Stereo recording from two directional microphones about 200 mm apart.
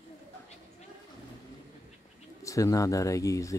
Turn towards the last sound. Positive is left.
turn(degrees=15)  # may be behind; listen again after turning